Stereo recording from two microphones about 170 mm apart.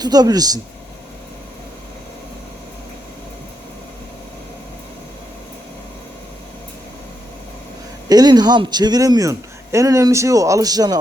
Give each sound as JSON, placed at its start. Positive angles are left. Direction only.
{"t": 0.0, "sound": "speech", "side_deg": -20}
{"t": 8.1, "sound": "speech", "side_deg": -25}